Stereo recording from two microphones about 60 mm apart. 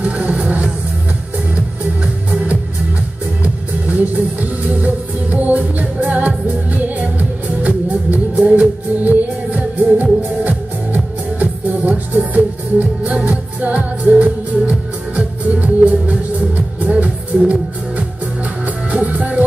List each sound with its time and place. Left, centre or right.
0.0 s music: right
3.4 s music: right